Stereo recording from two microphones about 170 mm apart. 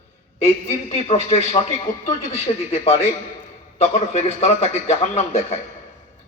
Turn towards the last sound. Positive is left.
turn(degrees=40)  # may be behind; listen again after turning